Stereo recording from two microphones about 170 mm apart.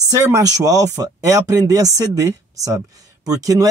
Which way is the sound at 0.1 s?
20° right (ahead or behind).